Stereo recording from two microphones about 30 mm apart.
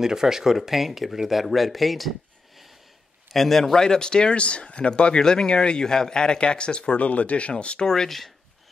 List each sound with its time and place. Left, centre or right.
0.0 s speech: centre
3.3 s a man's voice: centre
3.7 s speech: left
5.2 s speech: left
7.0 s speech: left
7.8 s speech: left